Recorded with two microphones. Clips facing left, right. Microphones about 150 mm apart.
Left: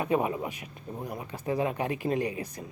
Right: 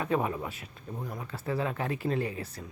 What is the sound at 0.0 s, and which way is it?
Speech, 15° left (ahead or behind).